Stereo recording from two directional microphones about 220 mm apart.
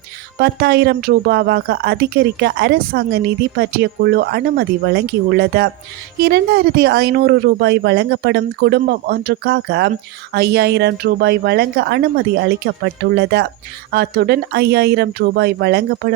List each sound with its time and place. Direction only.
0.3 s speech: 45° right (ahead or behind)